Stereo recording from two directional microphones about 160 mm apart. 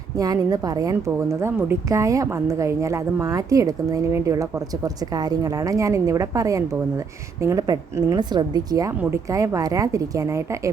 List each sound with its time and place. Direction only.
0.2 s a woman's voice: 25° right (ahead or behind)